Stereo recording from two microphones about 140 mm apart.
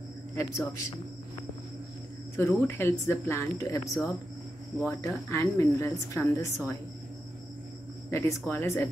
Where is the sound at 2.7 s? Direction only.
15° left (ahead or behind).